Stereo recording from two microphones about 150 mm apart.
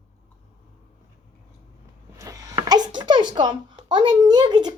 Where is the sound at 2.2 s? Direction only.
20° right (ahead or behind).